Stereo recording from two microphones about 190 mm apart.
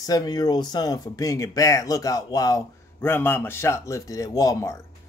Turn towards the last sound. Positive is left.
turn(degrees=15)  # may be behind; listen again after turning